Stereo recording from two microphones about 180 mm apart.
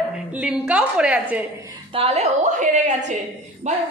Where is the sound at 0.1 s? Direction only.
5° right (ahead or behind).